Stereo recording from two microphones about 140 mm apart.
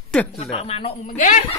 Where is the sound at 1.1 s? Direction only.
65° left (ahead or behind).